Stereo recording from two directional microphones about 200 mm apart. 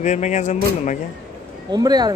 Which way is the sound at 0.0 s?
35° left (ahead or behind).